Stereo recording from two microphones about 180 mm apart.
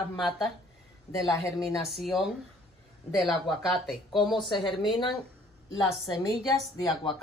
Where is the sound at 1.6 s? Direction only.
Centre (ahead or behind).